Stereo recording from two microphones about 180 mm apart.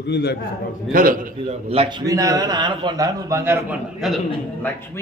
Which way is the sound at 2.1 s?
20° right (ahead or behind).